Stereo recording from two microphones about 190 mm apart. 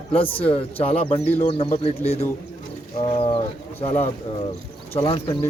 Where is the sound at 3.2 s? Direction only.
30° left (ahead or behind).